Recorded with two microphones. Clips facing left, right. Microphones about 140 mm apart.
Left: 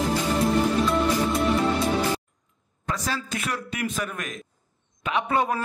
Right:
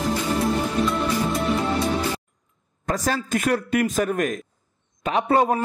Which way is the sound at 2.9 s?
45° right (ahead or behind).